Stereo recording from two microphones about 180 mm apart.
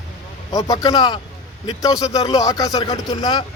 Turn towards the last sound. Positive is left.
turn(degrees=20)  # may be behind; listen again after turning